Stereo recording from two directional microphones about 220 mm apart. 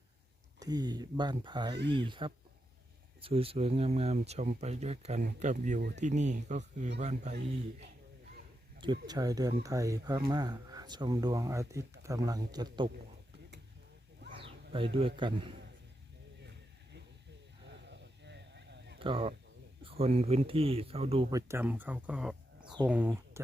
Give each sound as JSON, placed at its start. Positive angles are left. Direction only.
{"t": 0.6, "sound": "speech", "side_deg": -15}
{"t": 8.8, "sound": "speech", "side_deg": -20}
{"t": 14.3, "sound": "bird", "side_deg": -25}
{"t": 14.9, "sound": "speech", "side_deg": -25}
{"t": 17.7, "sound": "a sound", "side_deg": -55}
{"t": 18.9, "sound": "speech", "side_deg": -25}